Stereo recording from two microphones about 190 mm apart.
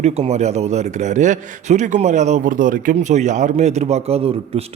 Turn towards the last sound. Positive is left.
turn(degrees=-30)  # may be behind; listen again after turning